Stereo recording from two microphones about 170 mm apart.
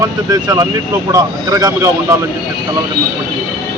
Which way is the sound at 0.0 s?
20° right (ahead or behind).